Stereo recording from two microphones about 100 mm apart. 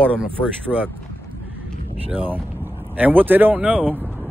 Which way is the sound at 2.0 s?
20° right (ahead or behind).